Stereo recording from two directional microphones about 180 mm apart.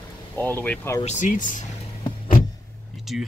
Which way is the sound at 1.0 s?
40° left (ahead or behind).